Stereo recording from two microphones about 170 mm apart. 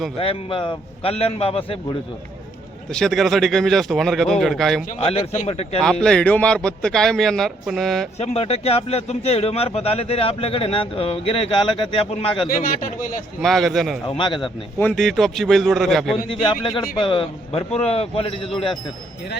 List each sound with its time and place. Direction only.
0.2 s speech: 30° left (ahead or behind)
2.9 s speech: 5° left (ahead or behind)
5.0 s speech: 30° left (ahead or behind)
5.8 s speech: 5° left (ahead or behind)
8.2 s speech: 35° left (ahead or behind)
12.5 s speech: 55° left (ahead or behind)
13.4 s speech: centre (ahead or behind)
14.1 s a man's voice: 30° left (ahead or behind)
14.8 s speech: 5° left (ahead or behind)
16.3 s speech: 30° left (ahead or behind)